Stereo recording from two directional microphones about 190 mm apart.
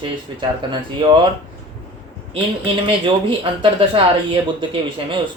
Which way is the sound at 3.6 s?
30° right (ahead or behind).